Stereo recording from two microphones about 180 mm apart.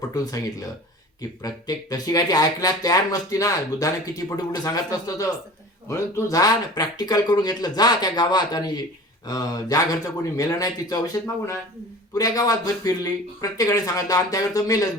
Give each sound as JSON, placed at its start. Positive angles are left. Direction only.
{"t": 0.1, "sound": "speech", "side_deg": 20}